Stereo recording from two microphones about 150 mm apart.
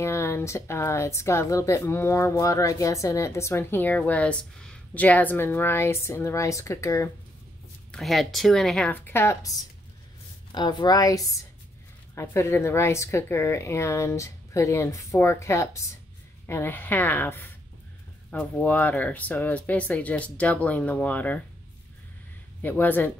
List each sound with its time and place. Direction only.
0.0 s speech: 20° left (ahead or behind)
7.9 s a woman's voice: centre (ahead or behind)
22.6 s speech: 10° left (ahead or behind)